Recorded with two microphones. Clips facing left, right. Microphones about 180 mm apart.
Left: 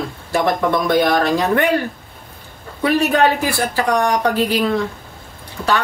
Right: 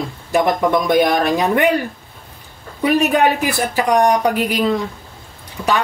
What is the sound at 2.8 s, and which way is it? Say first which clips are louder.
Speech: right 1 dB; 15° right (ahead or behind).